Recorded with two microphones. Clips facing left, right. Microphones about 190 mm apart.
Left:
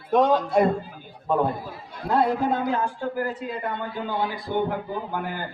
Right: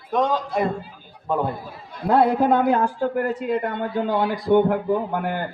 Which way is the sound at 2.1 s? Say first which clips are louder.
Right 5 dB; 60° right (ahead or behind).